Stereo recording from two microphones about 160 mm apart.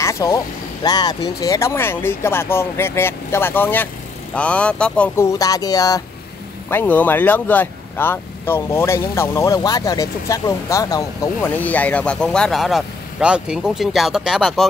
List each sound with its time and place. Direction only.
0.0 s vehicle: 20° left (ahead or behind)
0.8 s speech: 25° left (ahead or behind)
6.7 s speech: 10° left (ahead or behind)
11.5 s speech: 10° left (ahead or behind)